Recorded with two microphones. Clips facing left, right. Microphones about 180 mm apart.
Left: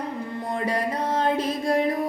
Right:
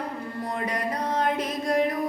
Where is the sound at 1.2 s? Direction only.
30° left (ahead or behind).